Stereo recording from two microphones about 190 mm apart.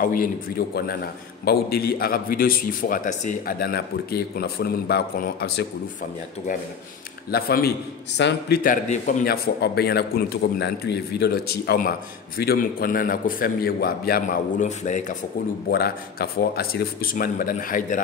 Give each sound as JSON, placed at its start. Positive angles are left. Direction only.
{"t": 0.0, "sound": "a man's voice", "side_deg": 50}
{"t": 7.2, "sound": "a man's voice", "side_deg": 50}
{"t": 8.2, "sound": "speech", "side_deg": 65}
{"t": 8.6, "sound": "a man's voice", "side_deg": 40}
{"t": 15.7, "sound": "a man's voice", "side_deg": 55}